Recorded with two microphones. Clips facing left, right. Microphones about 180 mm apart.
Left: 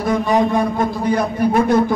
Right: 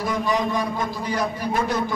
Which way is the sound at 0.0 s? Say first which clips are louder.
Left 7 dB; 55° left (ahead or behind).